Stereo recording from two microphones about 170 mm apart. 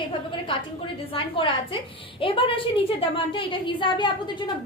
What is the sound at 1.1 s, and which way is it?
A woman's voice, 30° left (ahead or behind).